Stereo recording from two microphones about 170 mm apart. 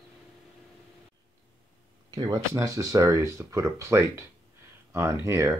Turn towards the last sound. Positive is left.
turn(degrees=-15)  # may be behind; listen again after turning